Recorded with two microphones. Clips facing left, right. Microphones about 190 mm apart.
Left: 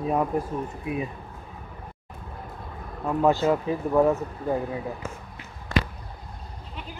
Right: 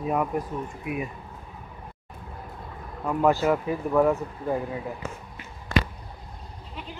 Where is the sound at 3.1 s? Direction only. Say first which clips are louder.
Left 1 dB; 20° left (ahead or behind).